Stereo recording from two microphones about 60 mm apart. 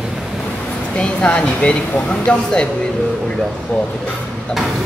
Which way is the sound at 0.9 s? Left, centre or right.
Centre.